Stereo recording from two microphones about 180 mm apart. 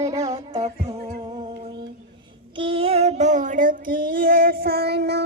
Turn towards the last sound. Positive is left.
turn(degrees=-65)  # may be behind; listen again after turning